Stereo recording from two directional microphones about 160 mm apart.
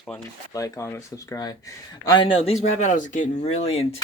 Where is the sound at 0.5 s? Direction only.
20° left (ahead or behind).